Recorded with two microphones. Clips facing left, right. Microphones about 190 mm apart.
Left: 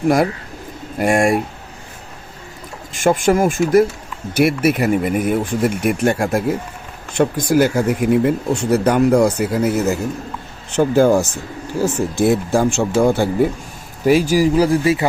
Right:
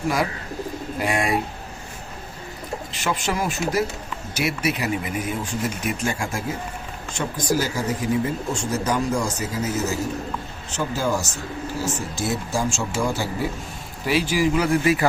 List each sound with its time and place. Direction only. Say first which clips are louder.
0.9 s speech: left 8 dB; 50° left (ahead or behind)
2.9 s speech: left 12 dB; 50° left (ahead or behind)
14.0 s speech: left 7 dB; 45° left (ahead or behind)